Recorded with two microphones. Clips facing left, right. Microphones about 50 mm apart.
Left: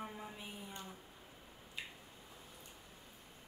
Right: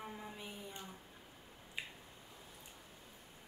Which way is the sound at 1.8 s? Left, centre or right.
Centre.